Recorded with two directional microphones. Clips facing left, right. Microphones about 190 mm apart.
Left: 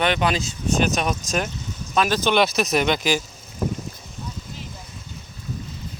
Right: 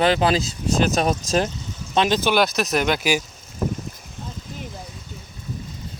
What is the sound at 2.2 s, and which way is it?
Speech, 5° right (ahead or behind).